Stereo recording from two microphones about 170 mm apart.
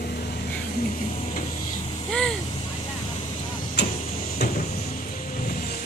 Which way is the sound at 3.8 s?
75° left (ahead or behind).